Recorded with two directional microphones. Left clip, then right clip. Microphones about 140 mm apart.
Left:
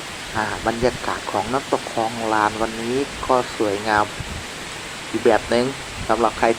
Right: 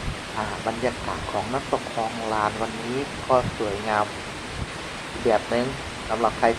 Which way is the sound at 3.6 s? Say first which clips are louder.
Left 6 dB; 25° left (ahead or behind).